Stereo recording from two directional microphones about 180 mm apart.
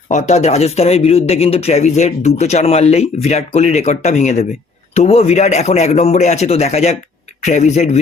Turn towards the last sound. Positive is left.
turn(degrees=40)  # may be behind; listen again after turning